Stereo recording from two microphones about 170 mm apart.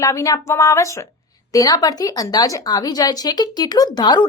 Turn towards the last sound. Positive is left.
turn(degrees=25)  # may be behind; listen again after turning